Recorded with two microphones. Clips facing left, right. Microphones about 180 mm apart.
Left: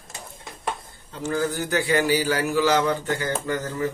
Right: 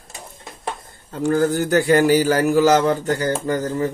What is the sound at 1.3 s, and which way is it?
Speech, 50° right (ahead or behind).